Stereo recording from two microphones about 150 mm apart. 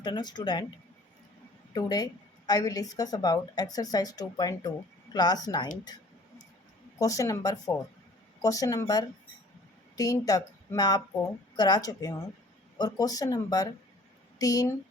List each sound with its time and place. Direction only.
0.0 s a woman's voice: 30° left (ahead or behind)
1.7 s a woman's voice: 25° left (ahead or behind)
7.0 s a woman's voice: 25° left (ahead or behind)